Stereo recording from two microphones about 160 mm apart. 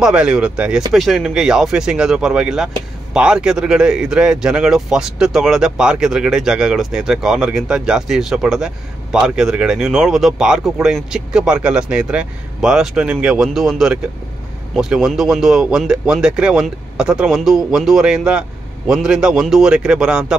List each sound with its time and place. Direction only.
0.0 s speech: 5° right (ahead or behind)